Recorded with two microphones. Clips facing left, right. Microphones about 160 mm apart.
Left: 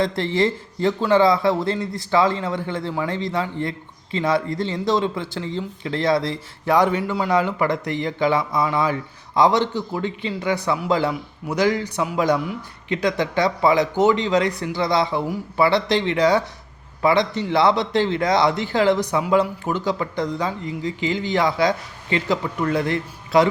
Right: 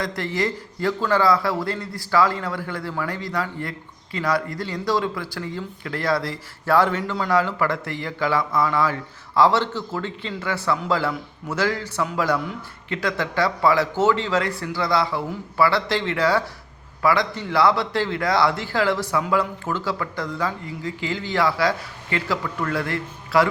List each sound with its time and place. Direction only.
0.0 s a man's voice: 25° left (ahead or behind)